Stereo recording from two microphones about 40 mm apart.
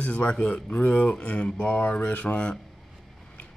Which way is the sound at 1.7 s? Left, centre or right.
Left.